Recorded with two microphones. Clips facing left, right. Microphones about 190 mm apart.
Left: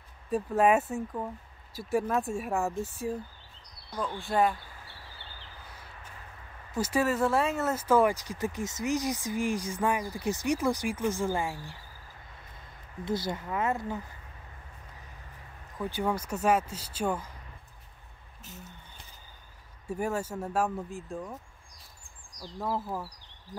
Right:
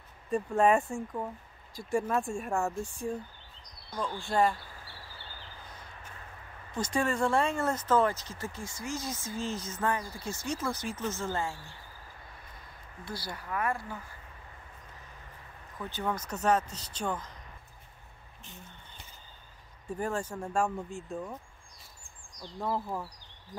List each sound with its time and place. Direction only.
0.3 s speech: 5° left (ahead or behind)
6.8 s speech: 5° left (ahead or behind)
13.0 s speech: 20° left (ahead or behind)
15.8 s speech: 10° left (ahead or behind)
19.9 s speech: 10° left (ahead or behind)
22.6 s speech: 5° left (ahead or behind)